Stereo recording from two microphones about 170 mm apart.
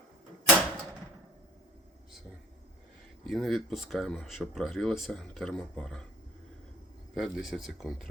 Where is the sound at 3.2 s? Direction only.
Centre (ahead or behind).